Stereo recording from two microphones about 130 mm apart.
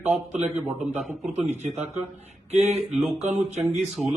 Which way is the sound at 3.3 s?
55° right (ahead or behind).